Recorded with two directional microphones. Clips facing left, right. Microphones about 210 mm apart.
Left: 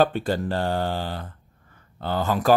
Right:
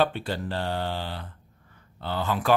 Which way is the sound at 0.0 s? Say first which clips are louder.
Left 4 dB; 45° left (ahead or behind).